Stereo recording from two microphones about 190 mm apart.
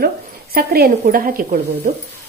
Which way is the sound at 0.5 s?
50° right (ahead or behind).